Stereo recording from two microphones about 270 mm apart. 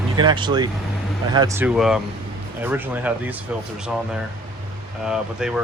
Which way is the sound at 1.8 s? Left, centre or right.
Centre.